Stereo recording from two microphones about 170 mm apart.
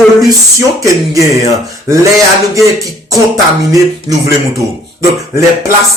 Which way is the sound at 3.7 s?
20° right (ahead or behind).